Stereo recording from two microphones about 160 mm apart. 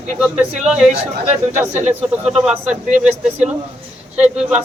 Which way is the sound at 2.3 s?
5° right (ahead or behind).